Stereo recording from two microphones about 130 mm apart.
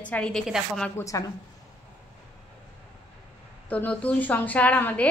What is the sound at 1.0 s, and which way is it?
Speech, 25° left (ahead or behind).